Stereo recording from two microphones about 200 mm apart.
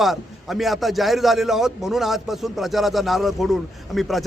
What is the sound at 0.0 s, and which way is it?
A man's voice, centre (ahead or behind).